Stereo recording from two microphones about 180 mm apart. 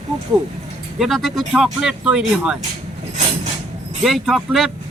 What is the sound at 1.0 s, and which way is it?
Speech, centre (ahead or behind).